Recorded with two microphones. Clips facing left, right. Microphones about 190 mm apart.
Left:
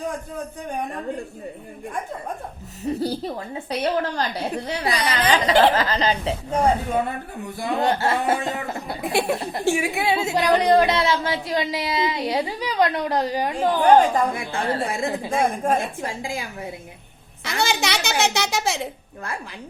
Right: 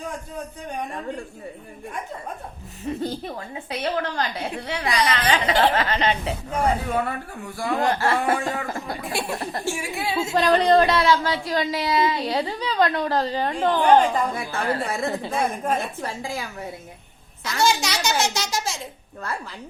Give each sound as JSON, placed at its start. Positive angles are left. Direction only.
{"t": 2.8, "sound": "a woman's voice", "side_deg": 35}
{"t": 6.9, "sound": "speech", "side_deg": 20}
{"t": 9.6, "sound": "a child's voice", "side_deg": 60}
{"t": 10.3, "sound": "a woman's voice", "side_deg": 15}
{"t": 13.8, "sound": "a woman's voice", "side_deg": 45}
{"t": 14.5, "sound": "speech", "side_deg": 25}
{"t": 14.9, "sound": "a woman's voice", "side_deg": 15}
{"t": 15.4, "sound": "a woman's voice", "side_deg": 45}
{"t": 15.8, "sound": "a woman's voice", "side_deg": 15}
{"t": 17.4, "sound": "a child's voice", "side_deg": 60}